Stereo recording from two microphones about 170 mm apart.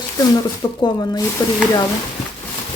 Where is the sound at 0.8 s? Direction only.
25° left (ahead or behind).